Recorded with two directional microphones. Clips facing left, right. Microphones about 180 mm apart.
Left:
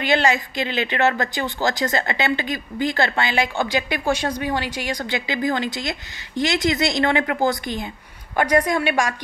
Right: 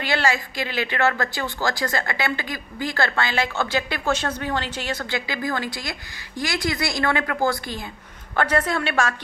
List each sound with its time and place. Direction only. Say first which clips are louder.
0.0 s a woman's voice: left 4 dB; 20° left (ahead or behind)